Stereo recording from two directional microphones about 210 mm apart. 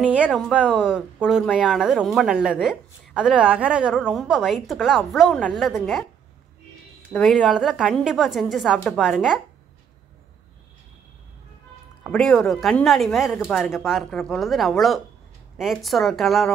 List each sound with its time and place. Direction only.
0.0 s speech: 5° right (ahead or behind)
7.1 s speech: centre (ahead or behind)
12.0 s speech: centre (ahead or behind)